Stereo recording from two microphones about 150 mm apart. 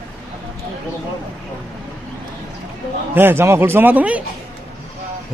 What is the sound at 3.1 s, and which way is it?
Speech, 15° right (ahead or behind).